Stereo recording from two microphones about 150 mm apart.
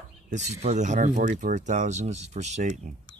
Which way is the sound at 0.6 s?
50° right (ahead or behind).